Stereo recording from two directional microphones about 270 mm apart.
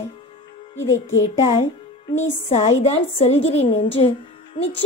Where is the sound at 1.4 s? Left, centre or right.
Left.